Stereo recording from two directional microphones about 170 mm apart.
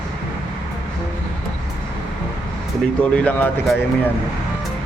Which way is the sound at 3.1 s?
10° left (ahead or behind).